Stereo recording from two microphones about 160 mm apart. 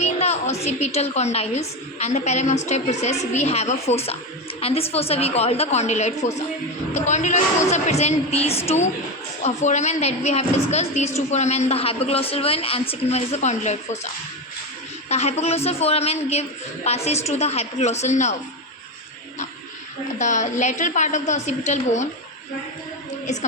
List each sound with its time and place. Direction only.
0.0 s a woman's voice: 45° left (ahead or behind)
15.1 s a woman's voice: 45° left (ahead or behind)
20.1 s a woman's voice: 50° left (ahead or behind)
23.2 s a woman's voice: 50° left (ahead or behind)